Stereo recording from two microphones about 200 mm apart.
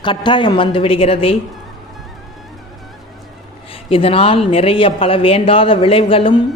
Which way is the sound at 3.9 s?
30° left (ahead or behind).